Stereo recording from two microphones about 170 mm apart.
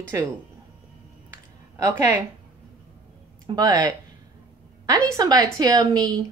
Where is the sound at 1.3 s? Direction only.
20° right (ahead or behind).